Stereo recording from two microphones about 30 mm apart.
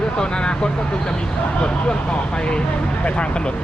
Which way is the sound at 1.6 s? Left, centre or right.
Left.